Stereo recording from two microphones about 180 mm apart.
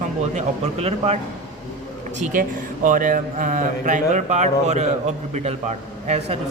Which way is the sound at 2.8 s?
50° right (ahead or behind).